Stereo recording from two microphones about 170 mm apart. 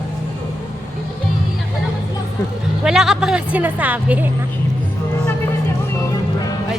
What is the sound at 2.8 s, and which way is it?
Music, 5° right (ahead or behind).